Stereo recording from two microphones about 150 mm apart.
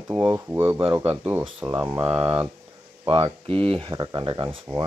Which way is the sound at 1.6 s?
20° right (ahead or behind).